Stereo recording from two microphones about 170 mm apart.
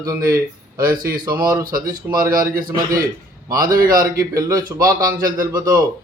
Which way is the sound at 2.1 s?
10° right (ahead or behind).